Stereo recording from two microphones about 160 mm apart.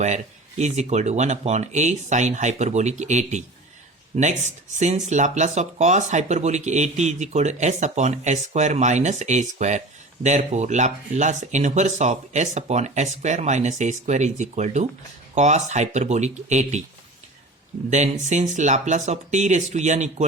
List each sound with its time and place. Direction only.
0.6 s speech: 45° right (ahead or behind)
17.9 s speech: 45° right (ahead or behind)